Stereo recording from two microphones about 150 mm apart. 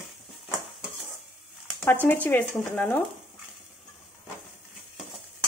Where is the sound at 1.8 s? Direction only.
10° left (ahead or behind).